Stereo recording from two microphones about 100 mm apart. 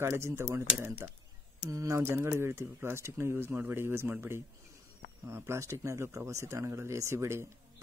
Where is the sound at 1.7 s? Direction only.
35° right (ahead or behind).